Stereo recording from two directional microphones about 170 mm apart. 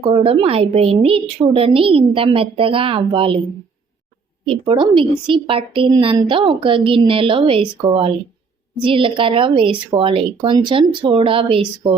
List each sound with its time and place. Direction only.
0.1 s a woman's voice: 35° right (ahead or behind)
4.4 s a woman's voice: 30° right (ahead or behind)